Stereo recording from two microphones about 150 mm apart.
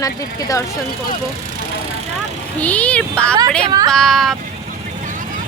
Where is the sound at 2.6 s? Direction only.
10° left (ahead or behind).